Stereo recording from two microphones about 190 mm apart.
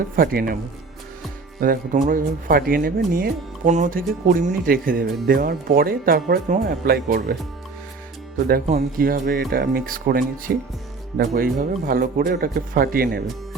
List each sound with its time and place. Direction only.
0.2 s speech: 50° right (ahead or behind)
1.6 s speech: 45° right (ahead or behind)
8.6 s speech: 45° right (ahead or behind)